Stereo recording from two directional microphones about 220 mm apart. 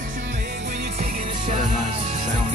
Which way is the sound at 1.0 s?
30° right (ahead or behind).